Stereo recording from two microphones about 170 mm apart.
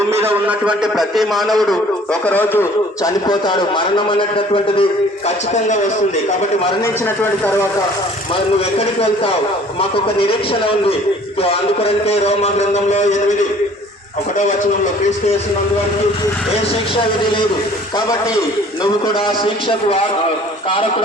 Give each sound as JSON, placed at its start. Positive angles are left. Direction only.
{"t": 0.2, "sound": "a man's voice", "side_deg": -10}
{"t": 6.8, "sound": "speech", "side_deg": 10}
{"t": 10.2, "sound": "a man's voice", "side_deg": 35}